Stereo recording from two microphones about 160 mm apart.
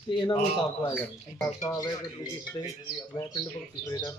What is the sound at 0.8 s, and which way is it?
Speech, 10° left (ahead or behind).